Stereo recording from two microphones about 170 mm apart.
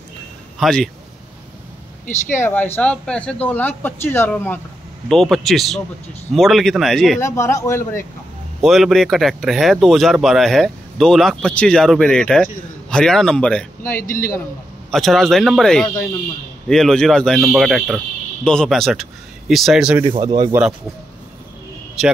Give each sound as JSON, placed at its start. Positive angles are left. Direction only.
{"t": 0.6, "sound": "speech", "side_deg": 5}
{"t": 2.0, "sound": "speech", "side_deg": 50}
{"t": 2.4, "sound": "speech", "side_deg": 10}
{"t": 5.0, "sound": "speech", "side_deg": 0}
{"t": 7.2, "sound": "speech", "side_deg": 15}
{"t": 8.6, "sound": "speech", "side_deg": 0}
{"t": 13.9, "sound": "speech", "side_deg": 55}
{"t": 14.9, "sound": "speech", "side_deg": 0}
{"t": 20.1, "sound": "speech", "side_deg": -30}